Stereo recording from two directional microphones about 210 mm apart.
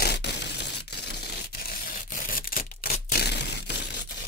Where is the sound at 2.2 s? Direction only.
45° left (ahead or behind).